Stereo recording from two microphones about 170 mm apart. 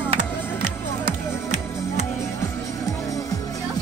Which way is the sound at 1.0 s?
45° right (ahead or behind).